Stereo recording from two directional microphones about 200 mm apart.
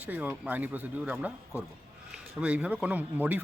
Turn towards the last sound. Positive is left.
turn(degrees=-10)  # may be behind; listen again after turning